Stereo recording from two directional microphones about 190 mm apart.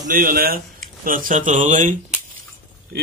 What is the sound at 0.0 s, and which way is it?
A man's voice, 45° right (ahead or behind).